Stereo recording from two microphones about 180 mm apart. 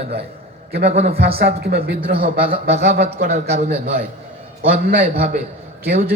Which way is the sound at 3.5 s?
35° right (ahead or behind).